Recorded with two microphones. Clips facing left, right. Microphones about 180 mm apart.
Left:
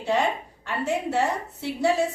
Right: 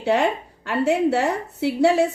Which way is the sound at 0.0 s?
65° right (ahead or behind).